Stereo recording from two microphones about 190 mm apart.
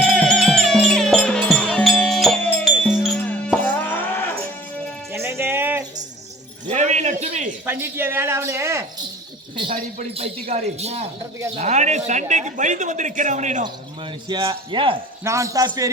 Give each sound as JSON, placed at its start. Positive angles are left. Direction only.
{"t": 0.0, "sound": "music", "side_deg": 5}
{"t": 5.1, "sound": "music", "side_deg": -15}
{"t": 6.7, "sound": "a sound", "side_deg": -40}
{"t": 7.6, "sound": "a sound", "side_deg": -10}
{"t": 9.7, "sound": "speech", "side_deg": -35}
{"t": 14.0, "sound": "speech", "side_deg": -25}
{"t": 15.2, "sound": "speech", "side_deg": -15}